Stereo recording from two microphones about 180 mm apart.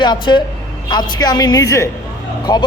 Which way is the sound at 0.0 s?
25° left (ahead or behind).